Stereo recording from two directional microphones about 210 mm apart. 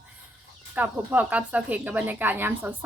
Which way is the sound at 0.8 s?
5° right (ahead or behind).